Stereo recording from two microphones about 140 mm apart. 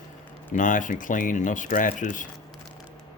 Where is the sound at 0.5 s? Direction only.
70° left (ahead or behind).